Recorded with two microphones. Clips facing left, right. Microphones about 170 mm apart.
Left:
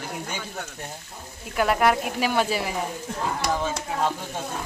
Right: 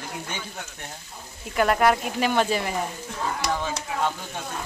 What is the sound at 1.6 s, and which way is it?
Speech, centre (ahead or behind).